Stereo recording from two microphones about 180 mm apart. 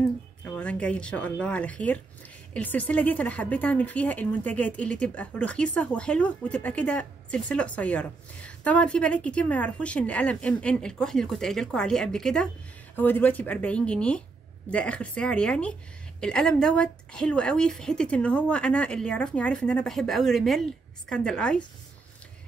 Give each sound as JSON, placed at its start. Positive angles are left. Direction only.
{"t": 0.4, "sound": "a woman's voice", "side_deg": 5}